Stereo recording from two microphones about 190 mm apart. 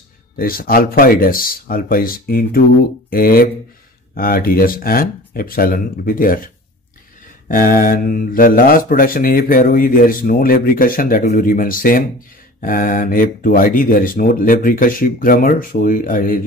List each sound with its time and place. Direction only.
0.4 s speech: 50° left (ahead or behind)